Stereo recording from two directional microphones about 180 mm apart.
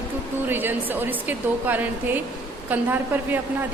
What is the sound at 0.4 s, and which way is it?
A woman's voice, 10° right (ahead or behind).